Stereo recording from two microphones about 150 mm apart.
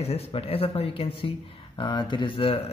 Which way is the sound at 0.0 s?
40° left (ahead or behind).